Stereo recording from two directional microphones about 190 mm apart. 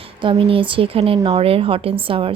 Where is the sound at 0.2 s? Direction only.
25° right (ahead or behind).